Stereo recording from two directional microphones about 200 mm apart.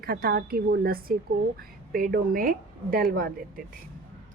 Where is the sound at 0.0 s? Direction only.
50° right (ahead or behind).